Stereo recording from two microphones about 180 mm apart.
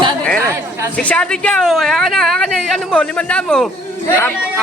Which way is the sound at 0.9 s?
5° left (ahead or behind).